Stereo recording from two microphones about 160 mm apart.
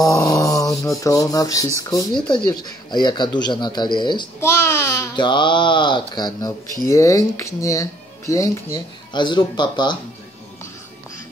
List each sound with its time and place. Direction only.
0.0 s speech: 25° left (ahead or behind)
4.4 s speech: 15° left (ahead or behind)